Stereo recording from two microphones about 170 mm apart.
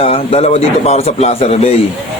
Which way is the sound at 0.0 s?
35° left (ahead or behind).